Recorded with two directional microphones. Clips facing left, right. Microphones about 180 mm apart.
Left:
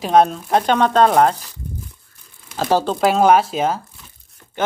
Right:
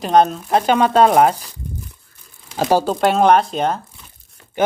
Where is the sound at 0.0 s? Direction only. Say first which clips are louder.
Even; centre (ahead or behind).